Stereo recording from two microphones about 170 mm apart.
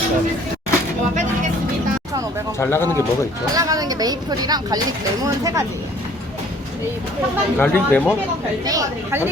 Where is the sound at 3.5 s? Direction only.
20° right (ahead or behind).